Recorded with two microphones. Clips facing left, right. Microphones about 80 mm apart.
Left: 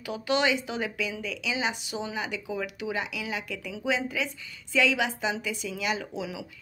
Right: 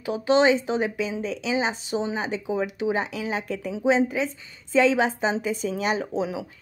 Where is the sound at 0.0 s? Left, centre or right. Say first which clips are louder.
Right 7 dB; right.